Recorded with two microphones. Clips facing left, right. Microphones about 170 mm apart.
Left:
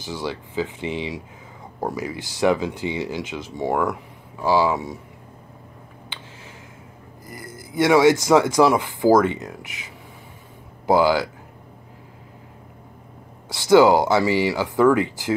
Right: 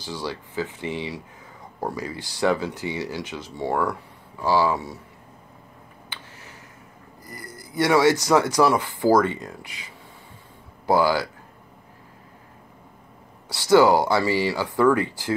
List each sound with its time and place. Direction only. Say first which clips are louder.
0.0 s speech: left 2 dB; 20° left (ahead or behind)
7.2 s speech: left 3 dB; 20° left (ahead or behind)
10.9 s speech: left 3 dB; 15° left (ahead or behind)
13.5 s speech: left 2 dB; 15° left (ahead or behind)